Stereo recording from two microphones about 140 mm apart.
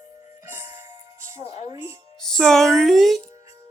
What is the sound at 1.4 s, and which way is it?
Music, 50° left (ahead or behind).